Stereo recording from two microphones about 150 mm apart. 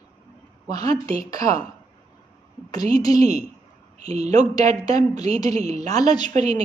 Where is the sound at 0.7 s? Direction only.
25° left (ahead or behind).